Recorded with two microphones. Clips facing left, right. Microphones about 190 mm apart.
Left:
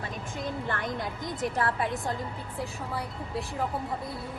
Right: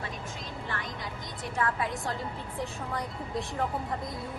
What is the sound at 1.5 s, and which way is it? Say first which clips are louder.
Speech: right 1 dB; 35° left (ahead or behind).